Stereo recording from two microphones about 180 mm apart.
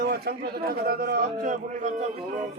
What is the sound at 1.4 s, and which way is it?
Speech, 45° right (ahead or behind).